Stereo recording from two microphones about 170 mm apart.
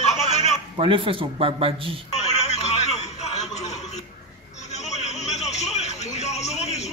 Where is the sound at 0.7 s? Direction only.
30° right (ahead or behind).